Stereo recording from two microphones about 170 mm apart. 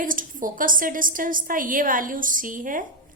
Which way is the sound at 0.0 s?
50° right (ahead or behind).